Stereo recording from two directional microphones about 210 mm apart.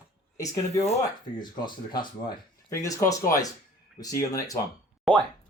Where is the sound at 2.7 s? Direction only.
15° left (ahead or behind).